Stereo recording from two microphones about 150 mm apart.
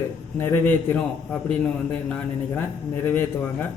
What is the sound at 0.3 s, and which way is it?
A man's voice, 15° left (ahead or behind).